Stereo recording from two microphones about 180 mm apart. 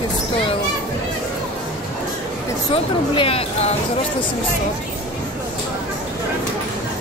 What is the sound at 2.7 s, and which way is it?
Speech, 30° left (ahead or behind).